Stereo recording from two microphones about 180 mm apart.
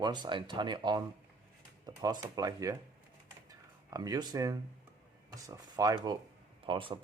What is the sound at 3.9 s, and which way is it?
Speech, 20° right (ahead or behind).